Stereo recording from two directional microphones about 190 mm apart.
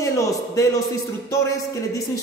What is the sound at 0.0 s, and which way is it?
Speech, 15° left (ahead or behind).